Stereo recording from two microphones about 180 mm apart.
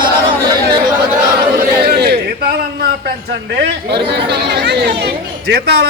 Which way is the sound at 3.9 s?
25° right (ahead or behind).